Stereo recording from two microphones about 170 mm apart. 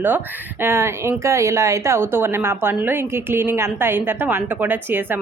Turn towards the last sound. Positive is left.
turn(degrees=-10)  # may be behind; listen again after turning